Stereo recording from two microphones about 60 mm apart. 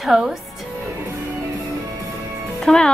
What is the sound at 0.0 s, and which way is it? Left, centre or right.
Speech, centre.